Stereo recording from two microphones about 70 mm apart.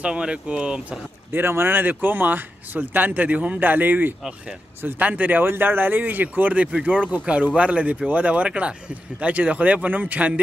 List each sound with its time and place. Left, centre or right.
0.0 s speech: centre
1.3 s speech: right